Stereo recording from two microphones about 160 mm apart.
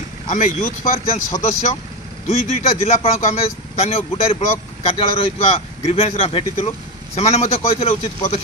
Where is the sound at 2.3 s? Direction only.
40° left (ahead or behind).